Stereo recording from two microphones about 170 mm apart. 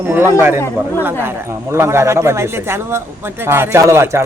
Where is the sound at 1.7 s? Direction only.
15° right (ahead or behind).